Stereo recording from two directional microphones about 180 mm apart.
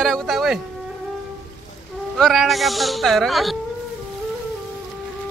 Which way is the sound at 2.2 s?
Centre (ahead or behind).